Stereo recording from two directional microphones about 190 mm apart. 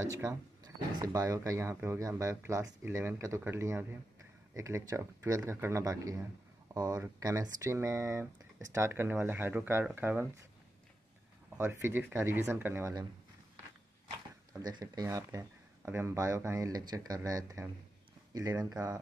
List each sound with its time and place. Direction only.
0.0 s speech: 15° right (ahead or behind)
11.5 s speech: 15° right (ahead or behind)
14.5 s speech: 20° right (ahead or behind)